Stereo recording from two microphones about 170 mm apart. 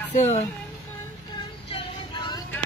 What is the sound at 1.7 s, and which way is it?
Music, 30° left (ahead or behind).